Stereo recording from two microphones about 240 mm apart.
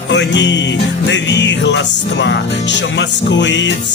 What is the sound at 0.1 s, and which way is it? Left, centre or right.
Music, left.